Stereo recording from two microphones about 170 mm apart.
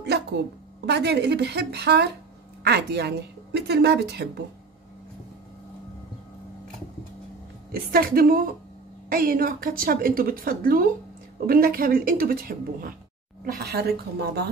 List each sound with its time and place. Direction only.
0.8 s a woman's voice: 75° right (ahead or behind)
7.7 s a woman's voice: 60° right (ahead or behind)
13.6 s a woman's voice: 70° right (ahead or behind)